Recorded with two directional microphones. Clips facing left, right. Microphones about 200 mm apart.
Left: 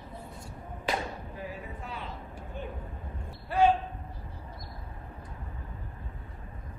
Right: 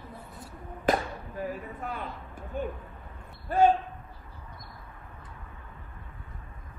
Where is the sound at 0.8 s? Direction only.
45° right (ahead or behind).